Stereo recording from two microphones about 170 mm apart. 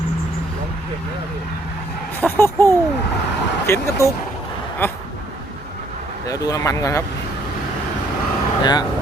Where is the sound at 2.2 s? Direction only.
15° left (ahead or behind).